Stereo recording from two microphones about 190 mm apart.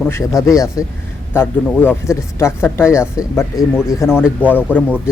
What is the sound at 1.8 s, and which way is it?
Speech, 15° left (ahead or behind).